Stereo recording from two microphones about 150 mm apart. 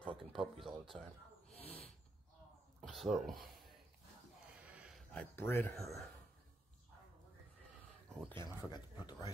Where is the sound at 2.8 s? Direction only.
Centre (ahead or behind).